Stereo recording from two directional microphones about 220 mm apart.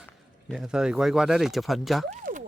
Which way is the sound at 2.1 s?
35° right (ahead or behind).